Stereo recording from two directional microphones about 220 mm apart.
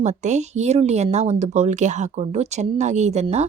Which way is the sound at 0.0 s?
30° right (ahead or behind).